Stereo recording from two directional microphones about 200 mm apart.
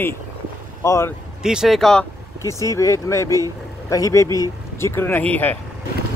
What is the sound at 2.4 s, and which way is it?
Speech, 15° left (ahead or behind).